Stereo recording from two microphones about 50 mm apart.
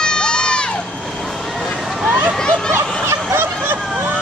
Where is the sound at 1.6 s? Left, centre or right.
Centre.